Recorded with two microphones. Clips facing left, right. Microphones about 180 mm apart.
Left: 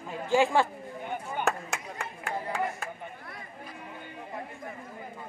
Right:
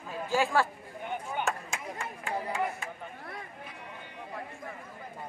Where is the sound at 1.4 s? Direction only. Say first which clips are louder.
Left 3 dB; 65° left (ahead or behind).